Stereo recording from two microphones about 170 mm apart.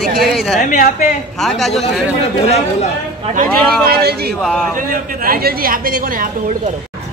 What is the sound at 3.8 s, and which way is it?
Speech, 65° right (ahead or behind).